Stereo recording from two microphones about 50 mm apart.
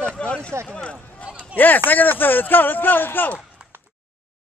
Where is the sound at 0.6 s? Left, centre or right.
Left.